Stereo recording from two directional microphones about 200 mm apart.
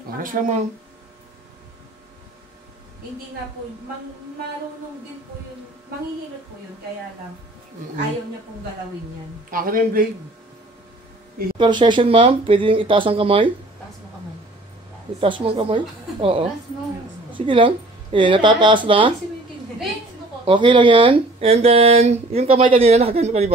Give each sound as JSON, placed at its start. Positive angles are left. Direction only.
{"t": 0.2, "sound": "speech", "side_deg": -40}
{"t": 9.5, "sound": "a man's voice", "side_deg": -45}
{"t": 11.5, "sound": "speech", "side_deg": -25}
{"t": 15.1, "sound": "speech", "side_deg": -25}
{"t": 20.4, "sound": "speech", "side_deg": -25}